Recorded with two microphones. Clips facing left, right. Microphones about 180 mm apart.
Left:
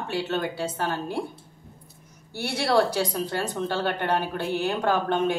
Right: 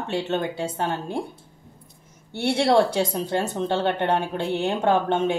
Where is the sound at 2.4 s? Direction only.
25° right (ahead or behind).